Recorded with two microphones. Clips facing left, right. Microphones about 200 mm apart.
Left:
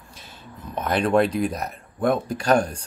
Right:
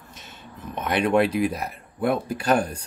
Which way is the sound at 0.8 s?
10° right (ahead or behind).